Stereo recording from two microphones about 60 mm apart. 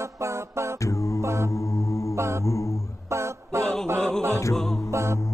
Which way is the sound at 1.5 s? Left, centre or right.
Left.